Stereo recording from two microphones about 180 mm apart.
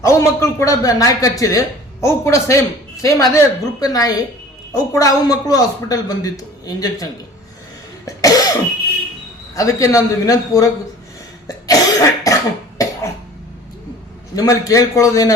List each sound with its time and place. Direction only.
0.0 s speech: 15° left (ahead or behind)
8.0 s cough: 20° left (ahead or behind)
9.6 s a man's voice: 20° left (ahead or behind)
11.4 s cough: 20° left (ahead or behind)
14.3 s a man's voice: 20° left (ahead or behind)